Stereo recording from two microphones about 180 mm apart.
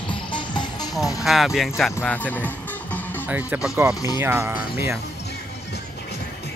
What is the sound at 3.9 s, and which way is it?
Speech, 20° left (ahead or behind).